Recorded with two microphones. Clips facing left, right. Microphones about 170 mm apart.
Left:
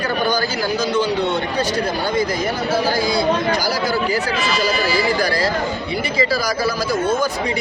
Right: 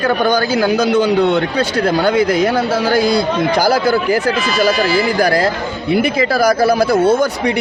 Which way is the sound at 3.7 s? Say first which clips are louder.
Right 6 dB; 55° right (ahead or behind).